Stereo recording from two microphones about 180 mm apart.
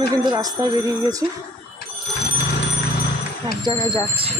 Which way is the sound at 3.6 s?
30° right (ahead or behind).